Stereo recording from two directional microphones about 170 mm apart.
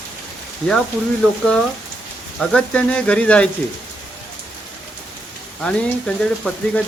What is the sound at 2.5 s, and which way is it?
Speech, 5° left (ahead or behind).